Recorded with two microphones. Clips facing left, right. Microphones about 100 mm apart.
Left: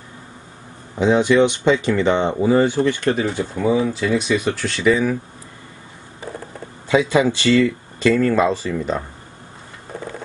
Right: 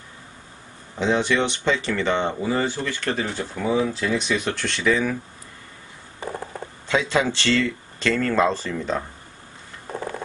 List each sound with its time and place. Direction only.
0.9 s speech: 10° left (ahead or behind)
3.8 s speech: centre (ahead or behind)
6.9 s speech: 10° left (ahead or behind)